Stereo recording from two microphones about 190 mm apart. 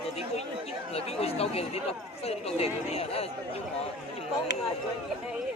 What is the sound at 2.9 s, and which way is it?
Speech, 30° left (ahead or behind).